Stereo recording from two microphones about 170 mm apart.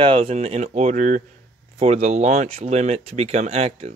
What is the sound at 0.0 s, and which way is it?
Speech, 35° right (ahead or behind).